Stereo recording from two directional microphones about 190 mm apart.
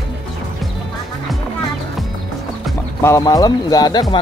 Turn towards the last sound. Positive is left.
turn(degrees=20)  # may be behind; listen again after turning